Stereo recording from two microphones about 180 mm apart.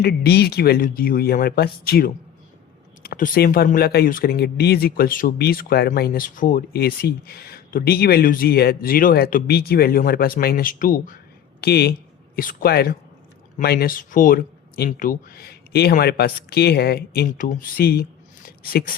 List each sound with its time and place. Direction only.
0.0 s speech: 60° left (ahead or behind)
11.6 s speech: 60° left (ahead or behind)
12.4 s speech: 50° left (ahead or behind)
18.4 s a sound: 55° left (ahead or behind)